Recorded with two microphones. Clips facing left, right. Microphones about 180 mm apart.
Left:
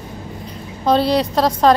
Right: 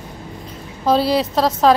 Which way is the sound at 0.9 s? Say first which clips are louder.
Left 1 dB; 5° right (ahead or behind).